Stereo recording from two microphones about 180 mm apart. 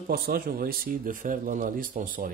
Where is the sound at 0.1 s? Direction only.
55° right (ahead or behind).